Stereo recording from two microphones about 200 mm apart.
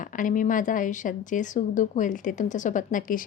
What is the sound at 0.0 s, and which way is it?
A woman's voice, 40° left (ahead or behind).